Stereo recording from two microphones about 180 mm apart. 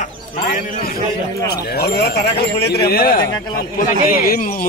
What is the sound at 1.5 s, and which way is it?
A man's voice, 60° left (ahead or behind).